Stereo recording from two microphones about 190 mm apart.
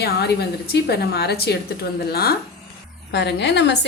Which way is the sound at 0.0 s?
55° left (ahead or behind).